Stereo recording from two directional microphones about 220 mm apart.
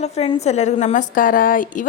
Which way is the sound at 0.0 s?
30° left (ahead or behind).